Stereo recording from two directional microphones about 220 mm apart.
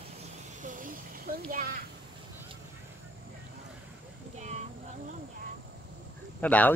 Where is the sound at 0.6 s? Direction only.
35° right (ahead or behind).